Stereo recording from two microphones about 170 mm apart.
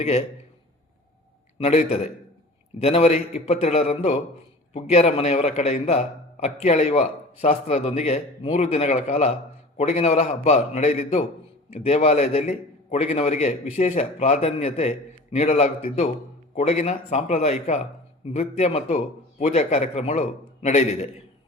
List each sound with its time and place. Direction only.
0.0 s speech: 40° left (ahead or behind)
1.5 s a man's voice: 40° left (ahead or behind)